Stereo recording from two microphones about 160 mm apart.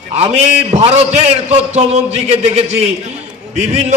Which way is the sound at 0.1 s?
40° right (ahead or behind).